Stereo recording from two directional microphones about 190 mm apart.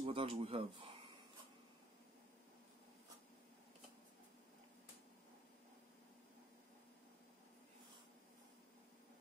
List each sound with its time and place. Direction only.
0.0 s speech: 30° right (ahead or behind)